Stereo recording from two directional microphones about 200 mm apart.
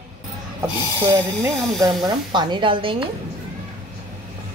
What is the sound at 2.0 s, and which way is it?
Speech, 20° right (ahead or behind).